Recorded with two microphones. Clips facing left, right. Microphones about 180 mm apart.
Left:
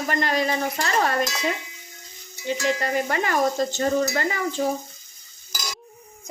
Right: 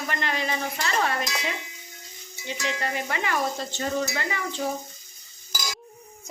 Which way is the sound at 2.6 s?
45° left (ahead or behind).